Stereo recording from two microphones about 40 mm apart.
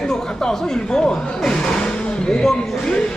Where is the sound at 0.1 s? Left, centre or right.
Centre.